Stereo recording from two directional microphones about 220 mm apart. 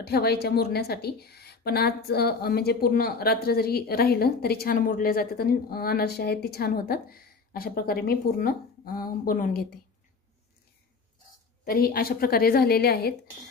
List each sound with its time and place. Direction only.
0.0 s a woman's voice: 45° left (ahead or behind)
11.6 s a woman's voice: 40° left (ahead or behind)